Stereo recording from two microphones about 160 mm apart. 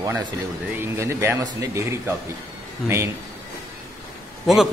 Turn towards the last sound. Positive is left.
turn(degrees=0)  # may be behind; listen again after turning